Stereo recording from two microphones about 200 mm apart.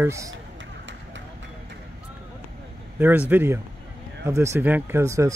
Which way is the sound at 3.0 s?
10° right (ahead or behind).